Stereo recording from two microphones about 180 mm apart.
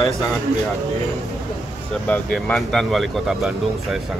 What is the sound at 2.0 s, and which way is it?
Speech, 5° left (ahead or behind).